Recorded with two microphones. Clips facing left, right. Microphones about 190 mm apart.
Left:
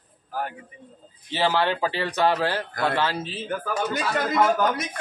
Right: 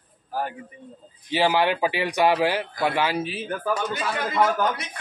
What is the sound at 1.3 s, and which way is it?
A man's voice, 15° right (ahead or behind).